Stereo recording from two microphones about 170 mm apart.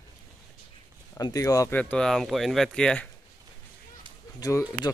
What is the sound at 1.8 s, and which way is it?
Speech, 5° left (ahead or behind).